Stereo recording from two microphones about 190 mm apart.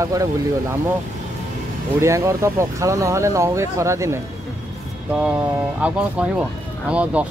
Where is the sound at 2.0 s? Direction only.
15° right (ahead or behind).